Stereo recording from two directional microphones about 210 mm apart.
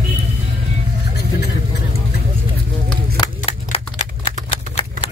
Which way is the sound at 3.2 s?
30° left (ahead or behind).